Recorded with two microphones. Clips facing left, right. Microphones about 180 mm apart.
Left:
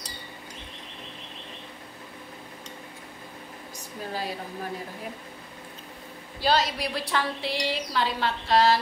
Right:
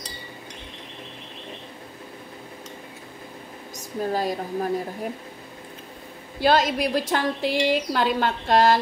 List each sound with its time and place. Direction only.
3.7 s a woman's voice: 45° right (ahead or behind)
6.4 s a woman's voice: 50° right (ahead or behind)